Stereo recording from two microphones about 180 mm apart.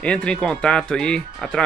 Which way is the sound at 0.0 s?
5° left (ahead or behind).